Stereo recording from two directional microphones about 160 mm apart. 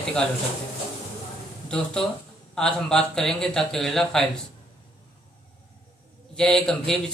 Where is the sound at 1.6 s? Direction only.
5° left (ahead or behind).